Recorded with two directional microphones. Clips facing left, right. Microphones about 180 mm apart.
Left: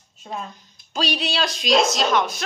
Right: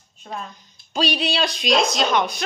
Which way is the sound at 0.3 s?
10° left (ahead or behind).